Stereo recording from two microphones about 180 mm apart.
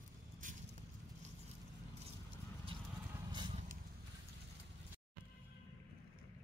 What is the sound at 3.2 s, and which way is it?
Vehicle, 25° right (ahead or behind).